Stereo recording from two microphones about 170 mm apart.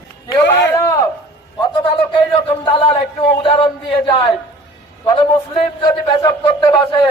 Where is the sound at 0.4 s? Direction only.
90° left.